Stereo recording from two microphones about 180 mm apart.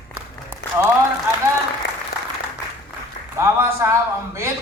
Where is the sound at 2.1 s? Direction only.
60° left (ahead or behind).